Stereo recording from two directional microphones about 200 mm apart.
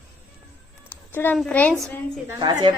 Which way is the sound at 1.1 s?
10° left (ahead or behind).